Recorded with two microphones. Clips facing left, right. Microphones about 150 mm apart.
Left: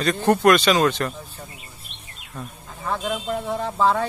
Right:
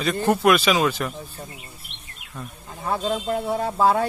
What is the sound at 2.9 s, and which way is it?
Speech, 10° right (ahead or behind).